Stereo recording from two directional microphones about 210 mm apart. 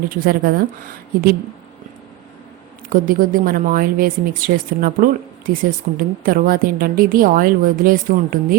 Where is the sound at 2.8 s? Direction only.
40° right (ahead or behind).